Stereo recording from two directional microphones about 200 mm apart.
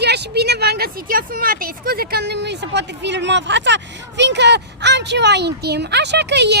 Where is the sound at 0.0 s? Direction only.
55° right (ahead or behind).